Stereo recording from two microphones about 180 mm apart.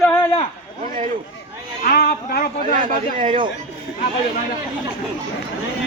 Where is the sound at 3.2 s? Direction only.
30° right (ahead or behind).